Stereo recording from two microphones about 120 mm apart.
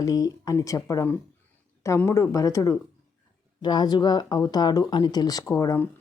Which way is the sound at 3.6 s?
40° left (ahead or behind).